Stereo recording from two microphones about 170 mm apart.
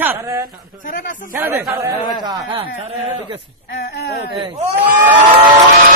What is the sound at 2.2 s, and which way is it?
Speech, 30° right (ahead or behind).